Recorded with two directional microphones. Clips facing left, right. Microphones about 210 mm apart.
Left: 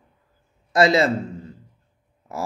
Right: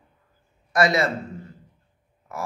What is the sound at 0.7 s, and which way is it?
Speech, 25° left (ahead or behind).